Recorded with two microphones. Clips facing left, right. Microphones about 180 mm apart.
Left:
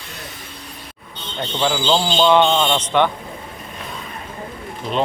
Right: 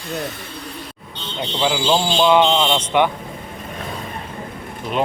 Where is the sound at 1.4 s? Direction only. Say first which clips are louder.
Even; 10° right (ahead or behind).